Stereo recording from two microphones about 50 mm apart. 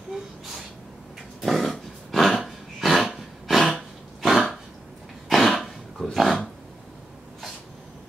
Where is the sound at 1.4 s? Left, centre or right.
Centre.